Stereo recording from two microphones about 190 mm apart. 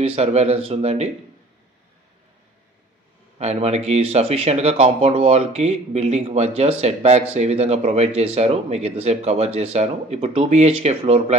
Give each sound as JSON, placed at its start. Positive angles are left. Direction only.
{"t": 0.0, "sound": "speech", "side_deg": -35}
{"t": 3.3, "sound": "speech", "side_deg": -35}